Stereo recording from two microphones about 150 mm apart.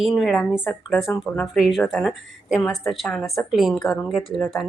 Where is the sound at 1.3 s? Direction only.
Centre (ahead or behind).